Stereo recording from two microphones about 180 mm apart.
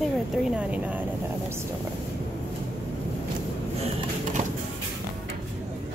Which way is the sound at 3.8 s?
35° right (ahead or behind).